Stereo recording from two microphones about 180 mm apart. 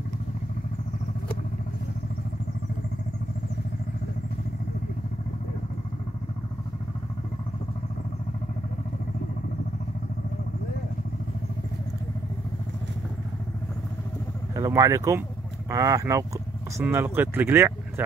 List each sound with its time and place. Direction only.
14.5 s speech: 20° right (ahead or behind)